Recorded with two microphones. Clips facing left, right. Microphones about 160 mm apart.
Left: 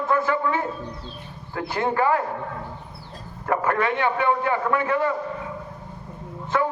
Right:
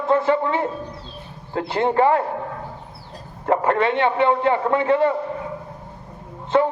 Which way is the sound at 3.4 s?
25° right (ahead or behind).